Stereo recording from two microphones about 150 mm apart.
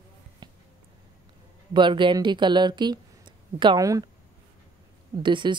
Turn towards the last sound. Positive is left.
turn(degrees=-30)  # may be behind; listen again after turning